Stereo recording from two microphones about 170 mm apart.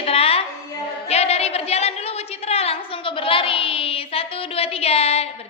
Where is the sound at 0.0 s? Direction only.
35° left (ahead or behind).